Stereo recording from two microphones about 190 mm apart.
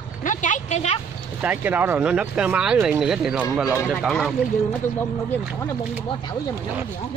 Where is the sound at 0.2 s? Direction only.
40° left (ahead or behind).